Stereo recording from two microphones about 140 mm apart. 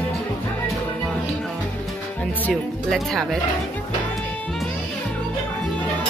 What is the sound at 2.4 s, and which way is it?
Speech, 5° left (ahead or behind).